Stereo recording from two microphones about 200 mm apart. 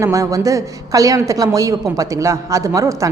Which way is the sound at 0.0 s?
15° right (ahead or behind).